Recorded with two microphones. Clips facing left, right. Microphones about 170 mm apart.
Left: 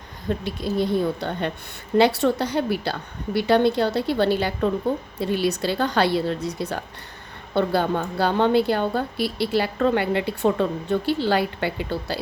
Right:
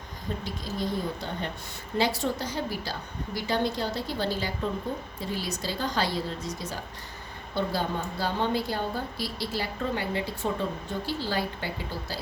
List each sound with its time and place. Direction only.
0.3 s a woman's voice: 65° left (ahead or behind)